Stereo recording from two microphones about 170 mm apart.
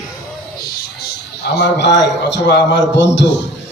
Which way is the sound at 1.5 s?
90° left.